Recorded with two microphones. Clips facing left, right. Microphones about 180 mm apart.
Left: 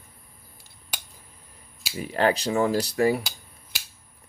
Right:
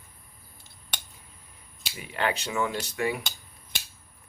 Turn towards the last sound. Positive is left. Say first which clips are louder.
# right 1 dB
turn(degrees=5)  # may be behind; listen again after turning